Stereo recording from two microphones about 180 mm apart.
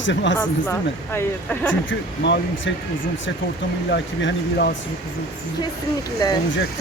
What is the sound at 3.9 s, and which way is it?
Speech, 80° left.